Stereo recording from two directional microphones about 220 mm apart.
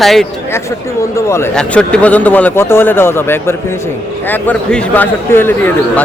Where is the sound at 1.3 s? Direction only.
5° left (ahead or behind).